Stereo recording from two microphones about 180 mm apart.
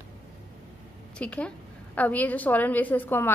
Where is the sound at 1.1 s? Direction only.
5° left (ahead or behind).